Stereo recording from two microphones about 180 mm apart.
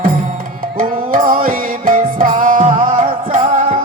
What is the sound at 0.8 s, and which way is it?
Music, 50° right (ahead or behind).